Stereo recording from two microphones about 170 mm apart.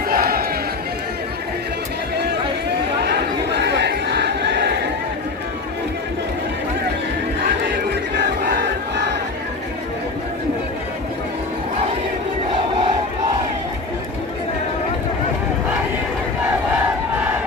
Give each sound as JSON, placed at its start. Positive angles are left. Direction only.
{"t": 0.1, "sound": "crowd", "side_deg": -60}
{"t": 3.0, "sound": "crowd", "side_deg": -80}
{"t": 16.4, "sound": "crowd", "side_deg": -10}